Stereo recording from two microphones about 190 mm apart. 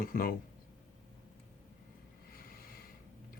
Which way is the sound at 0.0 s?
50° left (ahead or behind).